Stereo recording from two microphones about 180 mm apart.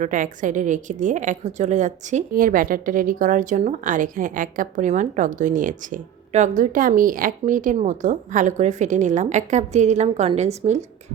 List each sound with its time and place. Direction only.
0.0 s a woman's voice: 45° right (ahead or behind)